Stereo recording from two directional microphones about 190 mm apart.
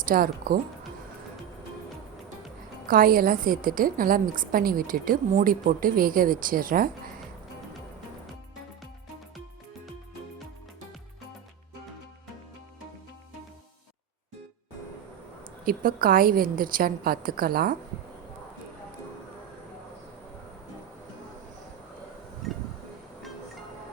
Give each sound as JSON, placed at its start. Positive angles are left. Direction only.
{"t": 0.0, "sound": "a woman's voice", "side_deg": -50}
{"t": 2.8, "sound": "a woman's voice", "side_deg": -50}
{"t": 15.6, "sound": "a woman's voice", "side_deg": -45}
{"t": 22.4, "sound": "wind chime", "side_deg": 0}